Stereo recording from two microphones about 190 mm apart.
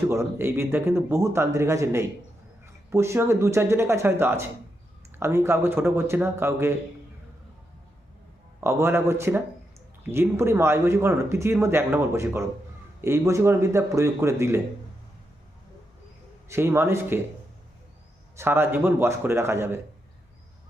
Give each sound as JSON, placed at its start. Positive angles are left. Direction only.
{"t": 0.1, "sound": "speech", "side_deg": -15}
{"t": 8.6, "sound": "speech", "side_deg": -15}
{"t": 16.5, "sound": "speech", "side_deg": -15}
{"t": 18.3, "sound": "speech", "side_deg": -10}